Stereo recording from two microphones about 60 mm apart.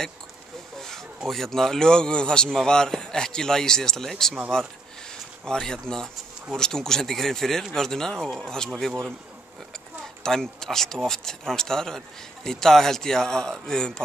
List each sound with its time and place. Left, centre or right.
0.7 s speech: centre
5.4 s speech: centre
10.2 s speech: centre